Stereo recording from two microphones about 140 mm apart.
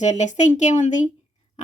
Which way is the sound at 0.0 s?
60° left (ahead or behind).